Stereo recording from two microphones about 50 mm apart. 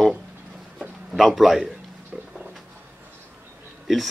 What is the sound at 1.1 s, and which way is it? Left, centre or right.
Speech, centre.